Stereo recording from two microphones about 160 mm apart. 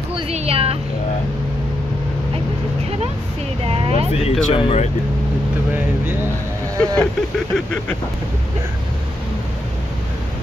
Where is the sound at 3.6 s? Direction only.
35° right (ahead or behind).